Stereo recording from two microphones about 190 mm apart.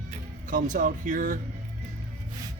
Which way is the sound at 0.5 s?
40° right (ahead or behind).